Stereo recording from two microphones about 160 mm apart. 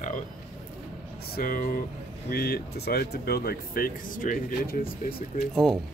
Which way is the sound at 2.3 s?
75° left (ahead or behind).